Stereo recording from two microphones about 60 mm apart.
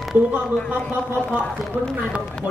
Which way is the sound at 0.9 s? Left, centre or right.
Right.